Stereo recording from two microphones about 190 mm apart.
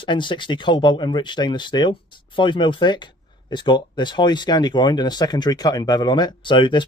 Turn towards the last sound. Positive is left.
turn(degrees=25)  # may be behind; listen again after turning